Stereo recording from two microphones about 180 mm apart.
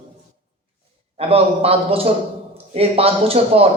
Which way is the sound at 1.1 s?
35° right (ahead or behind).